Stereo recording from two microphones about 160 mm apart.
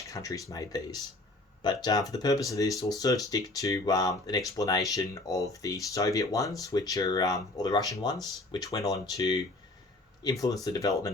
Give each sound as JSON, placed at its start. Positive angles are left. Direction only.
{"t": 0.0, "sound": "speech", "side_deg": 20}
{"t": 10.4, "sound": "speech", "side_deg": 20}